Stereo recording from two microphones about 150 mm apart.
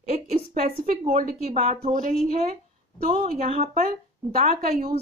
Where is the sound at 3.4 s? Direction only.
45° right (ahead or behind).